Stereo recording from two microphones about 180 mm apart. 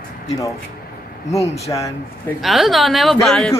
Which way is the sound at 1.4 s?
35° left (ahead or behind).